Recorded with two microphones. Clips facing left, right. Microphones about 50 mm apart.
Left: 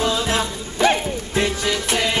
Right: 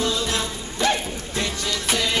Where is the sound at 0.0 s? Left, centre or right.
Left.